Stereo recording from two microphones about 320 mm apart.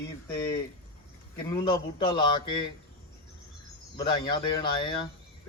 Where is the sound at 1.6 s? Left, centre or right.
Centre.